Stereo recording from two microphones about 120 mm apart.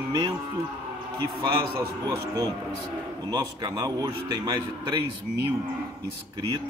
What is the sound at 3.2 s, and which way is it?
A man's voice, 35° right (ahead or behind).